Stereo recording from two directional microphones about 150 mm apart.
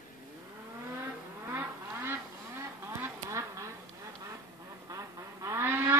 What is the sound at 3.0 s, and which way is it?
Duck, 20° right (ahead or behind).